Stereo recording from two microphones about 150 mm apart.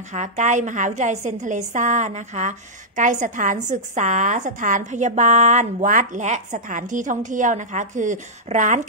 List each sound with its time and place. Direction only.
0.1 s a woman's voice: 50° right (ahead or behind)